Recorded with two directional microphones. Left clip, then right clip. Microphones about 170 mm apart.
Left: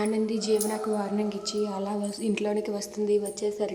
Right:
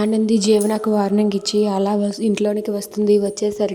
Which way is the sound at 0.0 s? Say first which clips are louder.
Right 9 dB; 40° right (ahead or behind).